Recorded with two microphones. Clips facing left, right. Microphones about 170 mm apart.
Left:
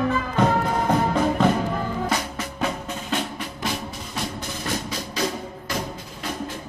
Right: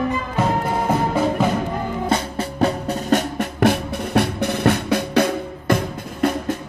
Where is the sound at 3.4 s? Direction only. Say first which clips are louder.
Right 11 dB; 60° right (ahead or behind).